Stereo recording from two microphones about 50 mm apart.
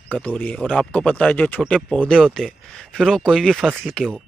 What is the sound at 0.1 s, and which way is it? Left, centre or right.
Speech, left.